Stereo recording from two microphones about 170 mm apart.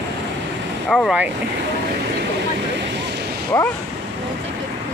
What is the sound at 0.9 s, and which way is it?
Speech, 5° left (ahead or behind).